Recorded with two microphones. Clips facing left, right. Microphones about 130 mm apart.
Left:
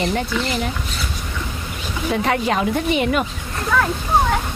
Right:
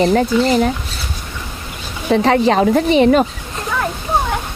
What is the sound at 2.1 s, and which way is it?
Speech, 35° right (ahead or behind).